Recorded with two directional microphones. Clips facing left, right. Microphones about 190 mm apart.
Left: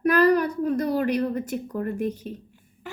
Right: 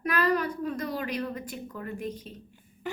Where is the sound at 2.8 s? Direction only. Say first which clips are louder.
Right 3 dB; centre (ahead or behind).